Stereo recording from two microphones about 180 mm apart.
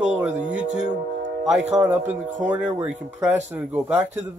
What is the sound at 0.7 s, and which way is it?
Speech, 40° right (ahead or behind).